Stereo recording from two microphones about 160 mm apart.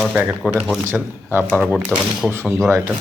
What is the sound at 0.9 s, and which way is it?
Speech, 10° right (ahead or behind).